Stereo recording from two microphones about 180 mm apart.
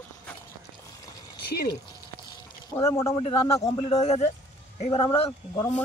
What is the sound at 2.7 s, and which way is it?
Speech, 15° left (ahead or behind).